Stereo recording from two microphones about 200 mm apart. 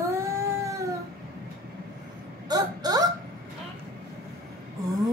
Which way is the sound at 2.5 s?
20° right (ahead or behind).